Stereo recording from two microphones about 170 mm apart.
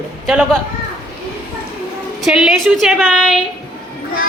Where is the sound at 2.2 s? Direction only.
Centre (ahead or behind).